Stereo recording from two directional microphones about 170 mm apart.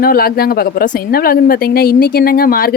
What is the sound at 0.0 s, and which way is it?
A woman's voice, 60° left (ahead or behind).